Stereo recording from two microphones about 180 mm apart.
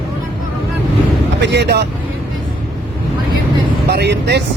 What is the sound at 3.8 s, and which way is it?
Vehicle, 70° right (ahead or behind).